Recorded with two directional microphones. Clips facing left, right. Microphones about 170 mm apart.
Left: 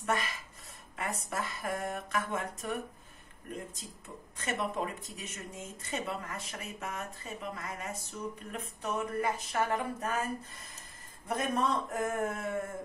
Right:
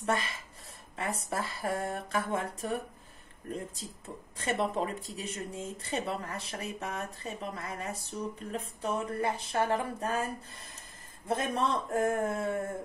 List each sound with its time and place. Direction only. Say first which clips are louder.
0.0 s speech: right 2 dB; 30° right (ahead or behind)